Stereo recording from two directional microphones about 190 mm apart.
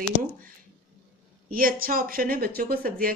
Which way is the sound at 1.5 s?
50° right (ahead or behind).